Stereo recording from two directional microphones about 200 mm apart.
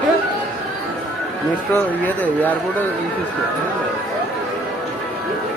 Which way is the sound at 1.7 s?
10° left (ahead or behind).